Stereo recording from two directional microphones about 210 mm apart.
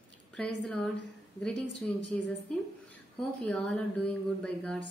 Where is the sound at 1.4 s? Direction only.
Centre (ahead or behind).